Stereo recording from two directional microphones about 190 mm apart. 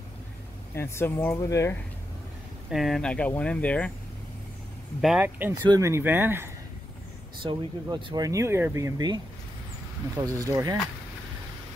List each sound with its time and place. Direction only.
0.7 s speech: 15° left (ahead or behind)
2.7 s speech: centre (ahead or behind)
5.0 s speech: 10° right (ahead or behind)
7.4 s speech: 20° right (ahead or behind)